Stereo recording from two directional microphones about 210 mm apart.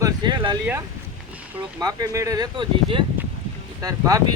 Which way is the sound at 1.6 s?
20° right (ahead or behind).